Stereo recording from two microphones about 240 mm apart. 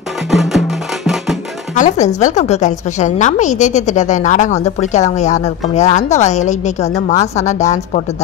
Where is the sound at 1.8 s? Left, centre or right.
Left.